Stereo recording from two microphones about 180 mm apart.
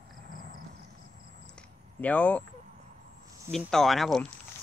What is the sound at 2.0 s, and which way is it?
Speech, 10° left (ahead or behind).